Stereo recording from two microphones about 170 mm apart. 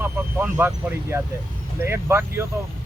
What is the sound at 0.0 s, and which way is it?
Speech, 10° right (ahead or behind).